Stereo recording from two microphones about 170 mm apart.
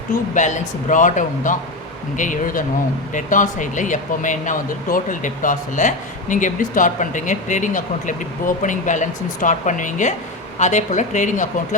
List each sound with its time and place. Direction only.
0.1 s speech: 45° left (ahead or behind)